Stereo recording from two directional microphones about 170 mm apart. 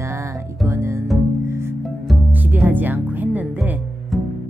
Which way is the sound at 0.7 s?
15° right (ahead or behind).